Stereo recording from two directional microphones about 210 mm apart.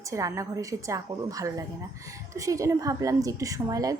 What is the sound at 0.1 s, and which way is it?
A woman's voice, 15° right (ahead or behind).